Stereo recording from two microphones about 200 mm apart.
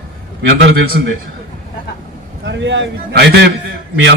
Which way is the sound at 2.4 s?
60° right (ahead or behind).